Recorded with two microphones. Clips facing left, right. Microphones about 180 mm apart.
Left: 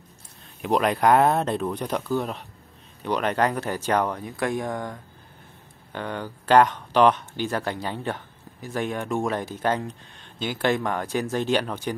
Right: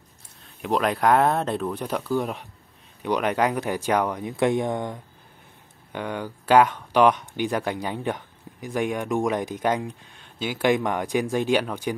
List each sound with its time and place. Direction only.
0.6 s speech: centre (ahead or behind)
4.3 s speech: 20° right (ahead or behind)
5.9 s speech: 10° right (ahead or behind)